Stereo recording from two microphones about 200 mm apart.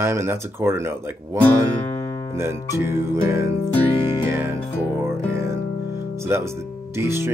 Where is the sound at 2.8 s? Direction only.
10° right (ahead or behind).